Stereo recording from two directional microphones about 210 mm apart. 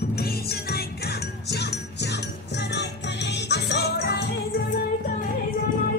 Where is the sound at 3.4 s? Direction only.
50° left (ahead or behind).